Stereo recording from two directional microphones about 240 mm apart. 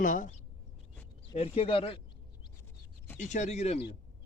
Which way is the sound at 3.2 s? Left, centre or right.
Left.